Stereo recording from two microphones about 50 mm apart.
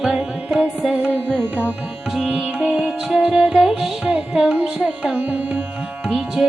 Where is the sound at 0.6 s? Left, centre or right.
Right.